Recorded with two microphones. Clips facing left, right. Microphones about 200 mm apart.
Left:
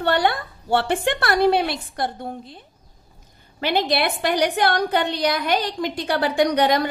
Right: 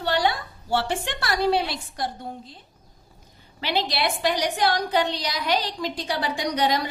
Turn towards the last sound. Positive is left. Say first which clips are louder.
# left 6 dB
turn(degrees=55)  # may be behind; listen again after turning